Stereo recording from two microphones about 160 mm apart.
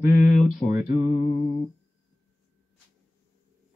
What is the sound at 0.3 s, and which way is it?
Speech, centre (ahead or behind).